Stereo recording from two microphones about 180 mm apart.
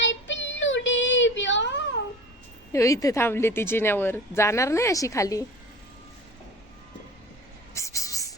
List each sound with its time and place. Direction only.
0.0 s child singing: 90° left
2.7 s a woman's voice: 20° left (ahead or behind)
7.7 s a sound: 15° left (ahead or behind)